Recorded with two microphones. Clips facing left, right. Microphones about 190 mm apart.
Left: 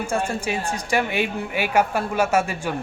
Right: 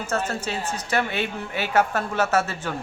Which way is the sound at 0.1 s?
10° left (ahead or behind).